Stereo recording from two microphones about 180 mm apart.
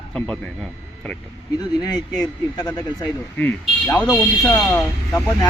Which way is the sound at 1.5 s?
20° left (ahead or behind).